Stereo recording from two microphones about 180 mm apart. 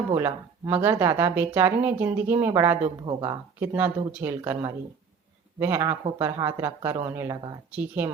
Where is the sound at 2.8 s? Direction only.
30° right (ahead or behind).